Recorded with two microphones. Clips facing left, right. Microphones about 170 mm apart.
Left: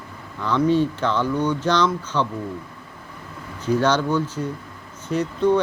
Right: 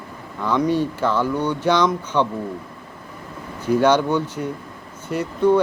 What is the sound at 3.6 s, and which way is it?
Speech, 10° right (ahead or behind).